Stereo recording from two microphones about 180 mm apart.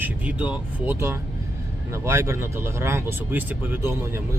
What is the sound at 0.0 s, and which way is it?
Speech, 10° right (ahead or behind).